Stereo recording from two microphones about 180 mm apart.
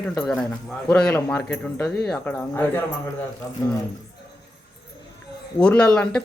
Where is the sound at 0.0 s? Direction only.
15° left (ahead or behind).